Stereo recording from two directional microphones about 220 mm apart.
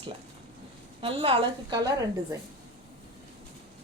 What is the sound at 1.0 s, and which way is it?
Speech, 25° right (ahead or behind).